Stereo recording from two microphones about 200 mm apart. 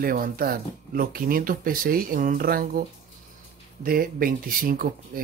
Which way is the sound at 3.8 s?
45° right (ahead or behind).